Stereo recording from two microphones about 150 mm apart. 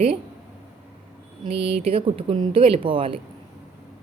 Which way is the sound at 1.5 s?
40° right (ahead or behind).